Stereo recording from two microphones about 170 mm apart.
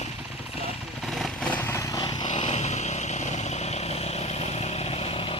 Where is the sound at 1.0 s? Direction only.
Centre (ahead or behind); by 2.2 s 25° left (ahead or behind).